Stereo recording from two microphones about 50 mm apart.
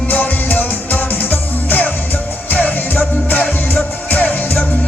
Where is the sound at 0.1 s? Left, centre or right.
Left.